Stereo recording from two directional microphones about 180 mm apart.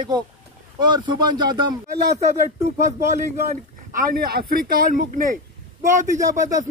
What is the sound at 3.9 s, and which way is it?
Speech, 50° right (ahead or behind).